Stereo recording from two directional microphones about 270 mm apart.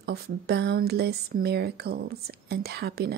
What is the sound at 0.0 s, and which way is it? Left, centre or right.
Speech, right.